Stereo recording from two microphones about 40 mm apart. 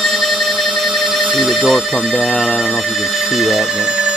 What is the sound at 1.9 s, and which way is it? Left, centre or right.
Speech, centre.